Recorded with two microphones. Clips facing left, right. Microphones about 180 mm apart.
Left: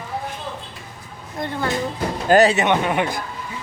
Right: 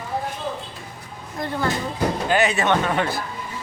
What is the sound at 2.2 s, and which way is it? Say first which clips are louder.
Speech: left 7 dB; 40° left (ahead or behind).